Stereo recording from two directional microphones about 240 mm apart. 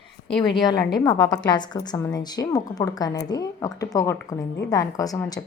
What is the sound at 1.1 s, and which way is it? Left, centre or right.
A woman's voice, centre.